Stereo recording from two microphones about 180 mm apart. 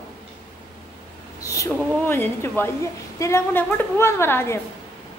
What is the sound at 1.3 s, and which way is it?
A woman's voice, 20° left (ahead or behind).